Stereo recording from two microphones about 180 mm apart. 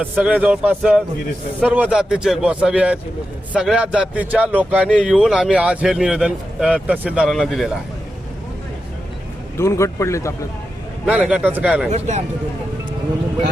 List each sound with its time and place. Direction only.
0.0 s a man's voice: 5° right (ahead or behind)
9.6 s speech: 15° left (ahead or behind)
11.0 s a man's voice: 5° right (ahead or behind)
11.9 s a man's voice: 40° right (ahead or behind)